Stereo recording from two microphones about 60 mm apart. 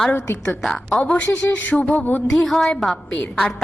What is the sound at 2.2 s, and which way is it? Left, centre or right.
Speech, centre.